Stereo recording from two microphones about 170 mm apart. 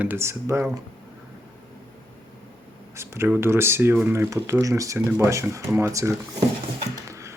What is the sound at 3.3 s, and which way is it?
Speech, 15° right (ahead or behind).